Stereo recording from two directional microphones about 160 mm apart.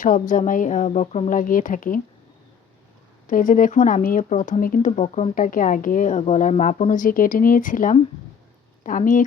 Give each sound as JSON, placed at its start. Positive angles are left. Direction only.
{"t": 0.0, "sound": "speech", "side_deg": 55}
{"t": 3.2, "sound": "speech", "side_deg": 55}
{"t": 5.3, "sound": "speech", "side_deg": 60}